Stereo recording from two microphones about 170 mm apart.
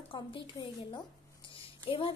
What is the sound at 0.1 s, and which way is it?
Speech, 25° left (ahead or behind).